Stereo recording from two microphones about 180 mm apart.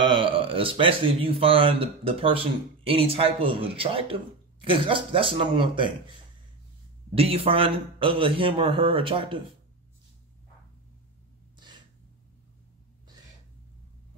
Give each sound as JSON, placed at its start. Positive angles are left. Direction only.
{"t": 0.0, "sound": "speech", "side_deg": -25}
{"t": 7.2, "sound": "speech", "side_deg": -30}
{"t": 11.5, "sound": "gasp", "side_deg": -25}